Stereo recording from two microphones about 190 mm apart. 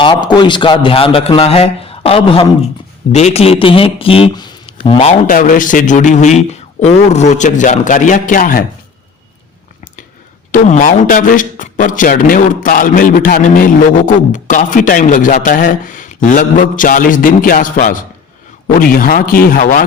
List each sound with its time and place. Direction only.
0.0 s a man's voice: 25° left (ahead or behind)
4.9 s a man's voice: 40° left (ahead or behind)
10.5 s a man's voice: 40° left (ahead or behind)